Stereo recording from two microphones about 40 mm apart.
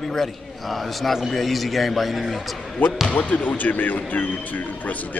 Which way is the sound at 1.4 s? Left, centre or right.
Centre.